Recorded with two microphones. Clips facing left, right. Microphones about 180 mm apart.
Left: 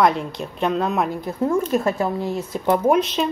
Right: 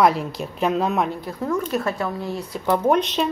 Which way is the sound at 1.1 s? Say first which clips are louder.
Left 4 dB; 20° left (ahead or behind).